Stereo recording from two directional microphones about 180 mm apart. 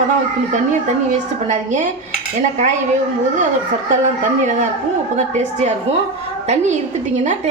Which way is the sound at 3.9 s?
40° right (ahead or behind).